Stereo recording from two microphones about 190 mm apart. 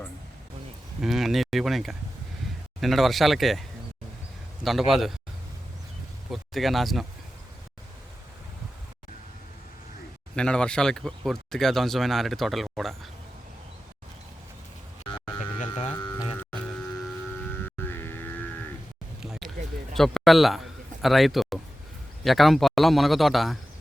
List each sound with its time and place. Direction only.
1.0 s speech: centre (ahead or behind)
4.6 s speech: centre (ahead or behind)
6.3 s speech: centre (ahead or behind)
10.3 s speech: 5° left (ahead or behind)
15.9 s a sound: 10° left (ahead or behind)
16.1 s music: 30° left (ahead or behind)
16.4 s music: 5° left (ahead or behind)
19.2 s a sound: centre (ahead or behind)
20.0 s a man's voice: centre (ahead or behind)